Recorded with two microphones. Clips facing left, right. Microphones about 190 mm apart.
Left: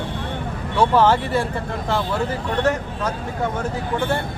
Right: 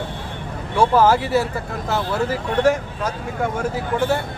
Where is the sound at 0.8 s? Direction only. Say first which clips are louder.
Right 1 dB; 10° right (ahead or behind).